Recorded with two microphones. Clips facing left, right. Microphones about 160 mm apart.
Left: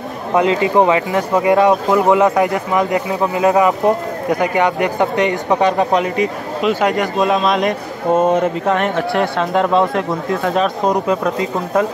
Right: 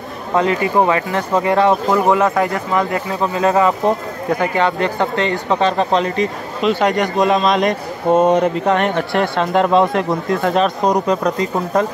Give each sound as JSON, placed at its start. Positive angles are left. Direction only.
{"t": 0.3, "sound": "a man's voice", "side_deg": 15}